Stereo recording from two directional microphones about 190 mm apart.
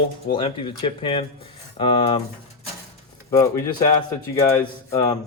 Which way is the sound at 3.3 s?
20° left (ahead or behind).